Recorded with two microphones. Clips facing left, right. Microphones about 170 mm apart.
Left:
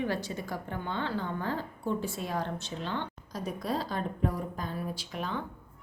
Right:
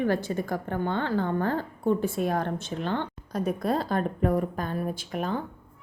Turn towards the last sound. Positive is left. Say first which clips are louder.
# right 6 dB
turn(degrees=-50)  # may be behind; listen again after turning